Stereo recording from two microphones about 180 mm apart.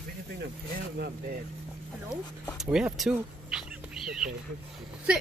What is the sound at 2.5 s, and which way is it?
Whispering, 5° right (ahead or behind).